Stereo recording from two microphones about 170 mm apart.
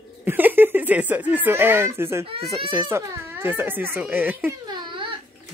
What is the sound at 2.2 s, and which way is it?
Speech, 35° right (ahead or behind).